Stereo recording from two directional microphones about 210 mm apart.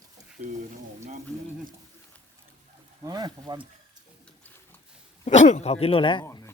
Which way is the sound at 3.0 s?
20° right (ahead or behind).